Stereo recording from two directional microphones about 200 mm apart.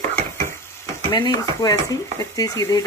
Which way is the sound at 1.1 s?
20° left (ahead or behind).